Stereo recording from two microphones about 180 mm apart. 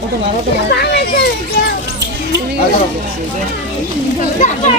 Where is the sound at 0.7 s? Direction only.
65° left (ahead or behind).